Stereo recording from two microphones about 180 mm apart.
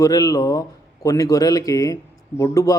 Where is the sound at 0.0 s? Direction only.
20° left (ahead or behind).